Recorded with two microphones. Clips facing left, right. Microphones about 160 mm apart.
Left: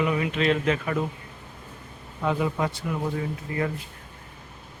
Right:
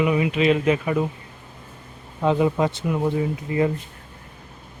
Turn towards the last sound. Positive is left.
turn(degrees=-20)  # may be behind; listen again after turning